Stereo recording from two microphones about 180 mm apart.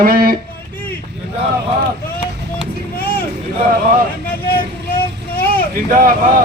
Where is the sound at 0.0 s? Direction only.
55° right (ahead or behind).